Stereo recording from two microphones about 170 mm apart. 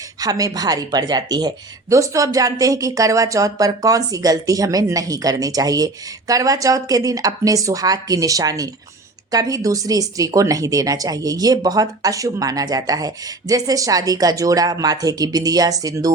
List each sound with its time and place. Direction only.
0.2 s a woman's voice: 20° right (ahead or behind)